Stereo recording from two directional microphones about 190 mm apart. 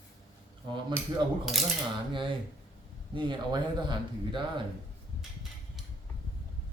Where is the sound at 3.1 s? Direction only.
25° right (ahead or behind).